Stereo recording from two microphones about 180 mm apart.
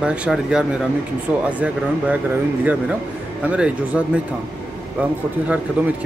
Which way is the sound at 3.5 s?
5° right (ahead or behind).